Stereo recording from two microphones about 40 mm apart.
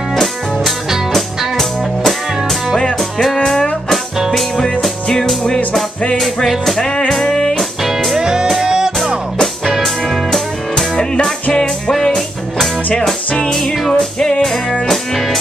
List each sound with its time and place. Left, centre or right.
0.1 s music: centre
2.8 s music: centre
6.1 s music: centre
7.1 s music: centre
7.8 s music: centre
8.2 s music: centre
9.7 s music: centre
11.5 s music: centre
13.5 s music: centre